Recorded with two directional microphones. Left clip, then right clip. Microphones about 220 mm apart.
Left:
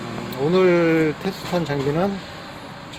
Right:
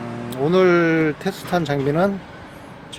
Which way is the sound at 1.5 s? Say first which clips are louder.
Right 3 dB; 30° right (ahead or behind).